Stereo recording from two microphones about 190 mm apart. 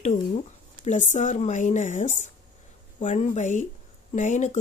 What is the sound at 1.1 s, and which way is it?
Speech, 35° left (ahead or behind).